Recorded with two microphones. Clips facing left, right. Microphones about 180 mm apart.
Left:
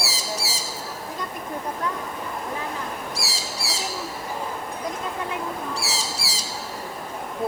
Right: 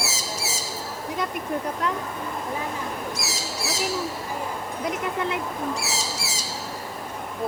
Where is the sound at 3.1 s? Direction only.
30° left (ahead or behind).